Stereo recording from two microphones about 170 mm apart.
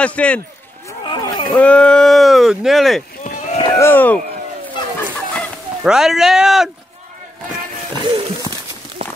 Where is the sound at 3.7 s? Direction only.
10° left (ahead or behind).